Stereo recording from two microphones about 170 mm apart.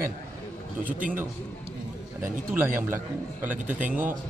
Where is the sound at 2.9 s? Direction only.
10° right (ahead or behind).